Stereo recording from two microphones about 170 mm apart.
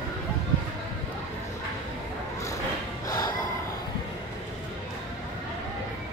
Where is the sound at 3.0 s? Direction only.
20° left (ahead or behind).